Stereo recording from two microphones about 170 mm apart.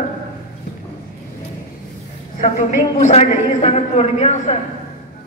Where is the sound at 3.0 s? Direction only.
40° left (ahead or behind).